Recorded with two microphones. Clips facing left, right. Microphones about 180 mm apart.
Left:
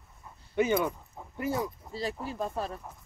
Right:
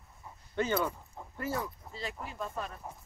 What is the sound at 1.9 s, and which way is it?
Speech, 35° left (ahead or behind).